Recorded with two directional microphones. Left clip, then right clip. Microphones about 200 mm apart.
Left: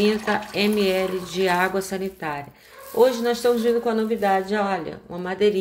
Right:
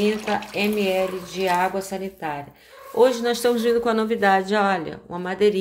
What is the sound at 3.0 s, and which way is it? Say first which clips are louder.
A man's voice: even; 15° right (ahead or behind).